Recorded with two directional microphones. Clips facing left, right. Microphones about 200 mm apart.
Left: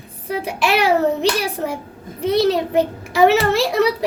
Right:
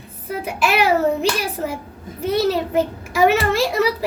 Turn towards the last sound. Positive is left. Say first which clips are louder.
# left 2 dB
turn(degrees=0)  # may be behind; listen again after turning